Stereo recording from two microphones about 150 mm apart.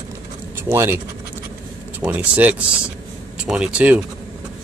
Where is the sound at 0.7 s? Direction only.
15° right (ahead or behind).